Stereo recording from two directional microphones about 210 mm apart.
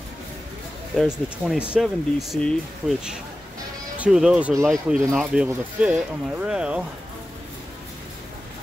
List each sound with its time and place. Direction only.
0.9 s speech: centre (ahead or behind)
4.0 s speech: 5° right (ahead or behind)